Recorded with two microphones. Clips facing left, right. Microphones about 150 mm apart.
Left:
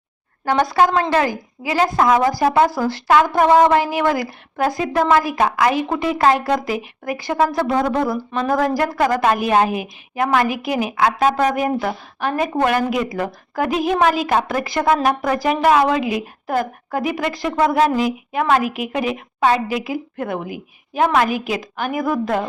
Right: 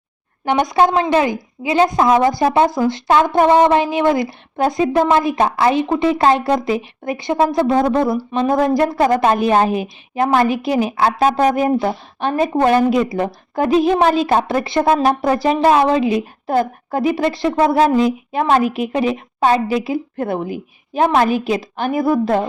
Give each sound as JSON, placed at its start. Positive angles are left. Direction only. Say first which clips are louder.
{"t": 0.4, "sound": "a woman's voice", "louder": "right 1 dB", "side_deg": -20}